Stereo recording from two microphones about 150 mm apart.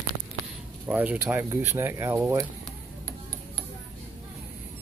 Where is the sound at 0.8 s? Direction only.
10° right (ahead or behind).